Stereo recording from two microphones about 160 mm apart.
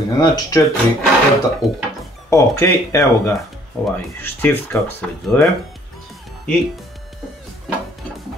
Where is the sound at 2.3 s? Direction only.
15° left (ahead or behind).